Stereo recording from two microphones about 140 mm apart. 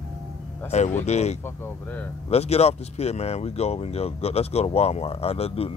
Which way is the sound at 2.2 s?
50° left (ahead or behind).